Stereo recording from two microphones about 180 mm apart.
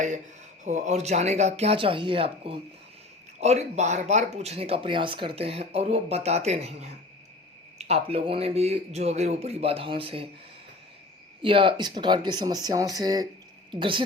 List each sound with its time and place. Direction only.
0.6 s speech: 40° right (ahead or behind)
11.4 s speech: 30° right (ahead or behind)